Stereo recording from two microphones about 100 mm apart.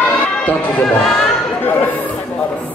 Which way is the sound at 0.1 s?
15° left (ahead or behind).